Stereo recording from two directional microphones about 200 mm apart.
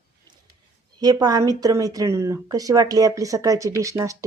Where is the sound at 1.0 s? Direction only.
20° right (ahead or behind).